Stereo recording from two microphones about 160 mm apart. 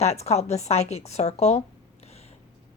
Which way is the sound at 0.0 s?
45° left (ahead or behind).